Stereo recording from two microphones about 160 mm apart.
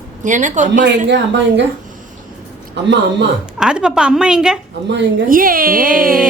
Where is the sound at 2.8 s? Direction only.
90° right.